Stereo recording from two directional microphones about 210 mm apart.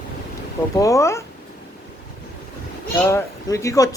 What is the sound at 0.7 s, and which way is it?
Speech, 15° left (ahead or behind).